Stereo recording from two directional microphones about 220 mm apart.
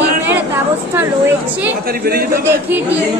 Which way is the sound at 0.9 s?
10° right (ahead or behind).